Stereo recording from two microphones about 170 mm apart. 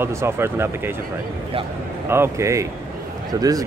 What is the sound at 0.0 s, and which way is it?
Speech, 15° right (ahead or behind).